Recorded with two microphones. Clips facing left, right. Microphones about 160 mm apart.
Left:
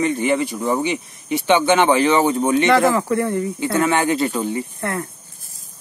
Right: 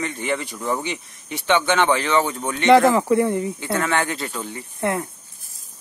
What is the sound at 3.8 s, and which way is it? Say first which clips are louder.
Speech: left 7 dB; 15° left (ahead or behind).